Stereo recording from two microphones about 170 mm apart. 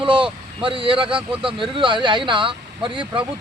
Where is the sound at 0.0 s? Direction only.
30° right (ahead or behind).